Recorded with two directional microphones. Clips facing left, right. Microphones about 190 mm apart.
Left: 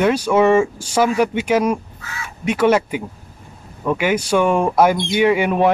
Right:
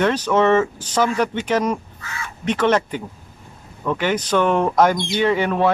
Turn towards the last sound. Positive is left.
turn(degrees=15)  # may be behind; listen again after turning